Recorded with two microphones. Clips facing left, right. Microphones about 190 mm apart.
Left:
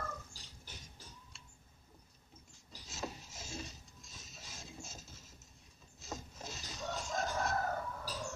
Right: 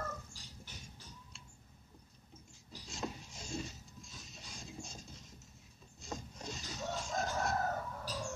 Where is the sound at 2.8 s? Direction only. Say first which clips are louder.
Right 2 dB; 5° left (ahead or behind).